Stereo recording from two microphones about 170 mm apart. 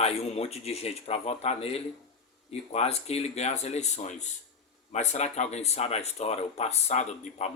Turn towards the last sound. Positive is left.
turn(degrees=40)  # may be behind; listen again after turning